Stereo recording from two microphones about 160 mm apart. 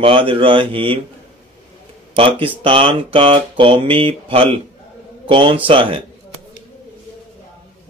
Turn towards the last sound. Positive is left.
turn(degrees=-35)  # may be behind; listen again after turning